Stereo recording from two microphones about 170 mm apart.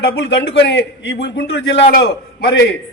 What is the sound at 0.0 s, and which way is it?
A man's voice, 80° left.